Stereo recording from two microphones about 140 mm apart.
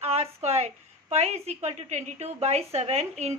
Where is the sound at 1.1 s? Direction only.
50° right (ahead or behind).